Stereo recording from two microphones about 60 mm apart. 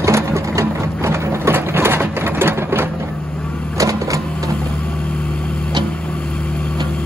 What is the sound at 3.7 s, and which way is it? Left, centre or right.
Vehicle, right.